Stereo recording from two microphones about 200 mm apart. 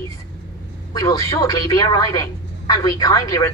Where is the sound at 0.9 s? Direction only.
15° left (ahead or behind).